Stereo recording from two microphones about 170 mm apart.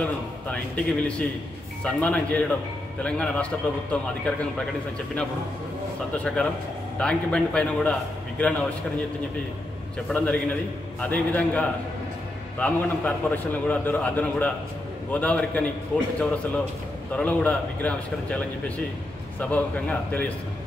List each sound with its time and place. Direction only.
0.0 s a man's voice: 5° left (ahead or behind)
10.1 s a man's voice: 10° left (ahead or behind)
17.1 s a man's voice: 10° left (ahead or behind)
19.4 s a man's voice: 10° left (ahead or behind)